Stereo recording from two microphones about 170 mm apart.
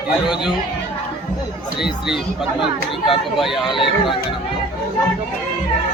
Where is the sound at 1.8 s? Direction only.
5° right (ahead or behind).